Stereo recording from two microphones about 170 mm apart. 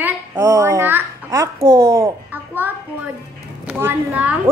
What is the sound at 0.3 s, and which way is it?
Babbling, 20° right (ahead or behind).